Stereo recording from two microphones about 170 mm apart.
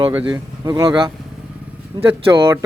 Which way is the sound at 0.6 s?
25° right (ahead or behind).